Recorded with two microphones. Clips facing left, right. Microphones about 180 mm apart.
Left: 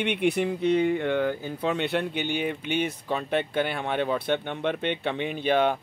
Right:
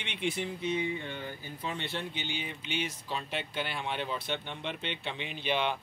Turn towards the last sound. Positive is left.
turn(degrees=45)  # may be behind; listen again after turning